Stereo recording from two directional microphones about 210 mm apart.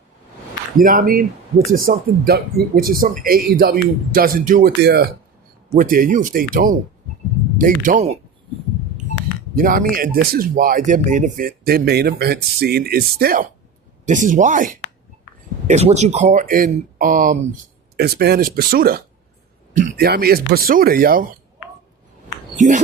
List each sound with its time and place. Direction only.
0.8 s speech: 40° right (ahead or behind)
9.6 s speech: 40° right (ahead or behind)
22.5 s speech: 35° right (ahead or behind)